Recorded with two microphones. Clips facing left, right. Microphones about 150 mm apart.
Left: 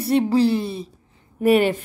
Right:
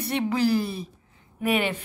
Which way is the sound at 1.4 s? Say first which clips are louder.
Left 8 dB; 40° left (ahead or behind).